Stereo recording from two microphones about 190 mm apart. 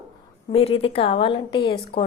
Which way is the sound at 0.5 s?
30° left (ahead or behind).